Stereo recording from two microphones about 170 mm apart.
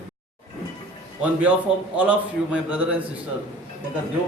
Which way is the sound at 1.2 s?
10° right (ahead or behind).